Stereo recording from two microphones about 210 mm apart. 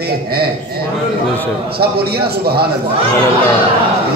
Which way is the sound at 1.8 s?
50° right (ahead or behind).